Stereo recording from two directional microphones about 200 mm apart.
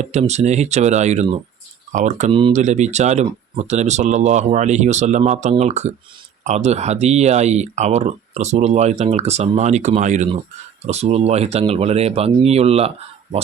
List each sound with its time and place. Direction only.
0.0 s speech: 35° right (ahead or behind)